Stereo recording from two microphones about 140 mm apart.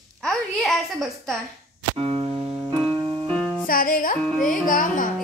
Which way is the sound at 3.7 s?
90° left.